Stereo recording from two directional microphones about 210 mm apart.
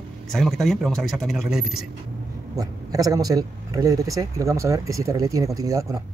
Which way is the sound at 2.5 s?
15° right (ahead or behind).